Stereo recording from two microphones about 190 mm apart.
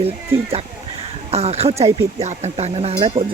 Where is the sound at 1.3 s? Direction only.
35° right (ahead or behind).